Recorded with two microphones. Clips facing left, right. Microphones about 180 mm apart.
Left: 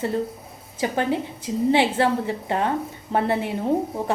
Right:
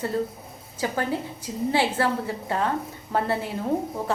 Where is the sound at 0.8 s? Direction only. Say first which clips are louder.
Left 3 dB; 20° left (ahead or behind).